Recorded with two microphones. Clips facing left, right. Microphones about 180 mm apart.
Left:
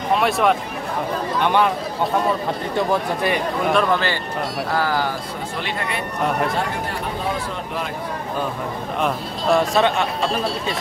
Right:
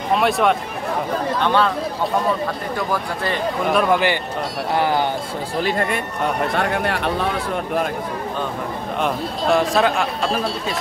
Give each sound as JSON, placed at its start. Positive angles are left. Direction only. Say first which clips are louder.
{"t": 0.1, "sound": "speech", "louder": "right 1 dB", "side_deg": 0}
{"t": 1.4, "sound": "speech", "louder": "left 1 dB", "side_deg": 15}
{"t": 2.7, "sound": "speech", "louder": "left 3 dB", "side_deg": 25}
{"t": 3.6, "sound": "speech", "louder": "right 2 dB", "side_deg": -5}
{"t": 4.7, "sound": "speech", "louder": "right 3 dB", "side_deg": -20}
{"t": 5.6, "sound": "speech", "louder": "right 8 dB", "side_deg": -45}
{"t": 6.5, "sound": "speech", "louder": "right 4 dB", "side_deg": -70}
{"t": 9.0, "sound": "speech", "louder": "right 1 dB", "side_deg": 0}